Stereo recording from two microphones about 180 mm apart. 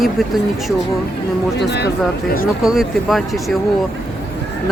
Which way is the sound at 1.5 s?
70° left (ahead or behind).